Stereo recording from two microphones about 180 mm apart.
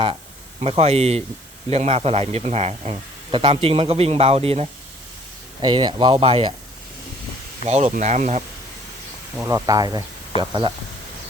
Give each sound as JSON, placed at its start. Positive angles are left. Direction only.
{"t": 0.6, "sound": "a man's voice", "side_deg": -35}
{"t": 7.6, "sound": "a man's voice", "side_deg": -35}
{"t": 9.4, "sound": "speech", "side_deg": -20}